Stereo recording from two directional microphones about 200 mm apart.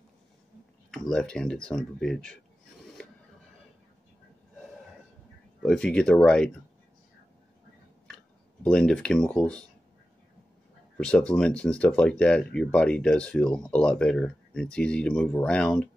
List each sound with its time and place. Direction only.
1.1 s speech: 5° left (ahead or behind)
5.6 s speech: centre (ahead or behind)
8.6 s speech: 5° left (ahead or behind)
11.0 s speech: 5° left (ahead or behind)